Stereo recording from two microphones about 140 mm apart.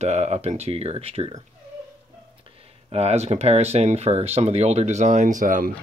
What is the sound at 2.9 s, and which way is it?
Speech, 50° right (ahead or behind).